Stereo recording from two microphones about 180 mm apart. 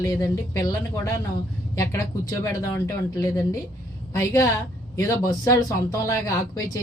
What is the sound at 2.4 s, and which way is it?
A woman's voice, 20° left (ahead or behind).